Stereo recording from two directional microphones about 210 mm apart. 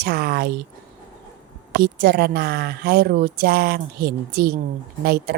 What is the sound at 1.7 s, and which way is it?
A woman's voice, 50° right (ahead or behind).